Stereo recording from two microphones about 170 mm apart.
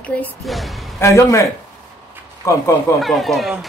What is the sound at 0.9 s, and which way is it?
A man's voice, 15° left (ahead or behind).